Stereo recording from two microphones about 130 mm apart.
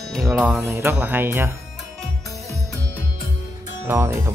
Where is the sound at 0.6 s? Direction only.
20° right (ahead or behind).